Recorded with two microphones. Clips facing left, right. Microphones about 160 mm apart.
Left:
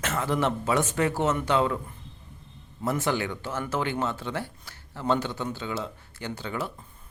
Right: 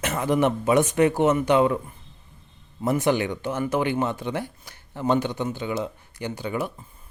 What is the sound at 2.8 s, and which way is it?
Speech, 20° right (ahead or behind).